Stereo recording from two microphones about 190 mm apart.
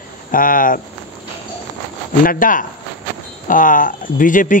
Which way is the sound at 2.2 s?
45° left (ahead or behind).